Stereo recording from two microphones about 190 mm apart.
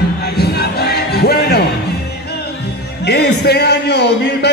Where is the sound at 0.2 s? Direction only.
55° left (ahead or behind).